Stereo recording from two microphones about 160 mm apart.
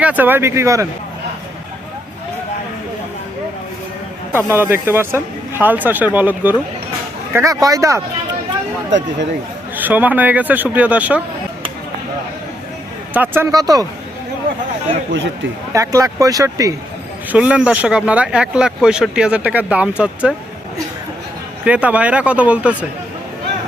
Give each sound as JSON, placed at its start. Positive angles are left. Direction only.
{"t": 0.0, "sound": "speech", "side_deg": -10}
{"t": 4.3, "sound": "speech", "side_deg": -15}
{"t": 9.7, "sound": "speech", "side_deg": -10}
{"t": 13.1, "sound": "speech", "side_deg": -10}
{"t": 15.7, "sound": "speech", "side_deg": -20}
{"t": 17.3, "sound": "speech", "side_deg": -5}
{"t": 21.6, "sound": "speech", "side_deg": -10}